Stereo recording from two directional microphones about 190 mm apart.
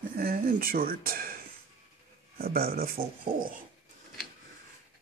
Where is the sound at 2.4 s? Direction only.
55° right (ahead or behind).